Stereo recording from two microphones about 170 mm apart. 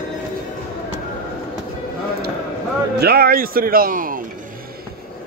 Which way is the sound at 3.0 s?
65° right (ahead or behind).